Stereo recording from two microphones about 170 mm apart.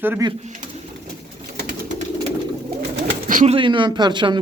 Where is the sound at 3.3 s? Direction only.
50° right (ahead or behind).